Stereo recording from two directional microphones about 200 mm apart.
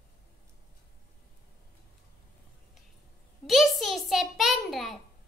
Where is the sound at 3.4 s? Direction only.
Centre (ahead or behind).